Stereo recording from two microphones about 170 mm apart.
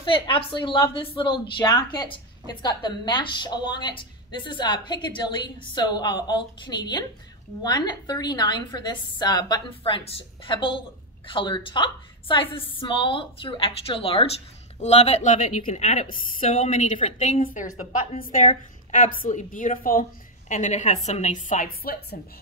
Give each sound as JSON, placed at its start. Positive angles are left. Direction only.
{"t": 0.0, "sound": "a woman's voice", "side_deg": 30}
{"t": 17.4, "sound": "a woman's voice", "side_deg": 55}